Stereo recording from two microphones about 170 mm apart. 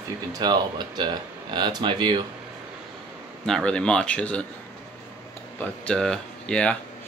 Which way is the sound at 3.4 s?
5° left (ahead or behind).